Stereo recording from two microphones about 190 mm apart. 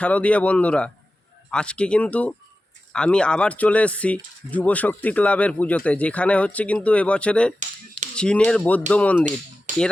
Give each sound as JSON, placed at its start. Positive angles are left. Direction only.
{"t": 0.0, "sound": "speech", "side_deg": 5}
{"t": 7.6, "sound": "finger snapping", "side_deg": -40}
{"t": 8.1, "sound": "speech", "side_deg": 5}